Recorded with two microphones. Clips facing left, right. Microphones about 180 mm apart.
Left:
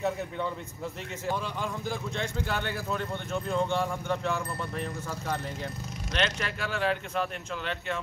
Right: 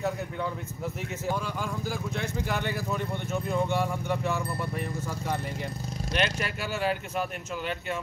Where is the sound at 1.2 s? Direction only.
Centre (ahead or behind).